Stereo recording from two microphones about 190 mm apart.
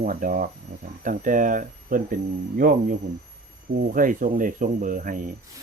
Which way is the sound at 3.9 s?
45° right (ahead or behind).